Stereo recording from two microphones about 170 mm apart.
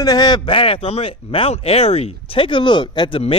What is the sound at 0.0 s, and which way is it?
Speech, 25° left (ahead or behind).